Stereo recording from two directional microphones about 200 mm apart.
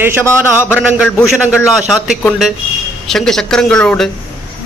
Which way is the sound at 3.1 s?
Centre (ahead or behind).